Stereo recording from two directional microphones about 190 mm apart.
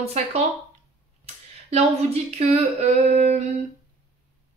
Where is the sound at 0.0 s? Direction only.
35° right (ahead or behind).